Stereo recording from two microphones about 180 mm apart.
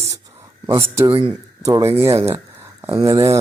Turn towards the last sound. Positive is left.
turn(degrees=-15)  # may be behind; listen again after turning